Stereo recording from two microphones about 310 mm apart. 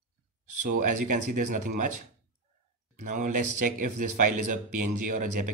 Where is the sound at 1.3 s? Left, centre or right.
Right.